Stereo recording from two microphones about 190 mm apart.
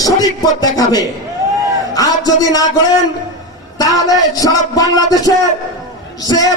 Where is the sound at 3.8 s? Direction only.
20° left (ahead or behind).